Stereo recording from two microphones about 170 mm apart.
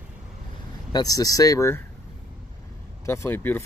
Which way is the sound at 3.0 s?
15° left (ahead or behind).